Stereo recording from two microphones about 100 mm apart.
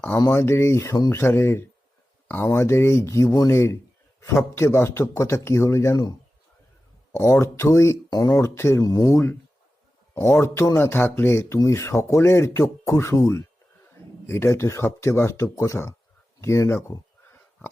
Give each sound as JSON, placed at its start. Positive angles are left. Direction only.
{"t": 0.3, "sound": "speech", "side_deg": 25}
{"t": 8.4, "sound": "speech", "side_deg": 25}
{"t": 8.8, "sound": "speech", "side_deg": 40}
{"t": 10.4, "sound": "speech", "side_deg": 25}